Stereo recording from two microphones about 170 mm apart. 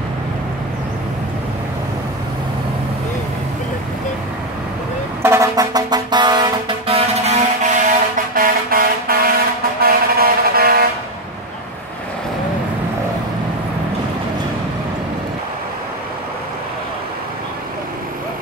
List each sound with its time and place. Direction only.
5.2 s vehicle: 15° right (ahead or behind); by 7.8 s 40° right (ahead or behind)
8.4 s vehicle: 55° right (ahead or behind)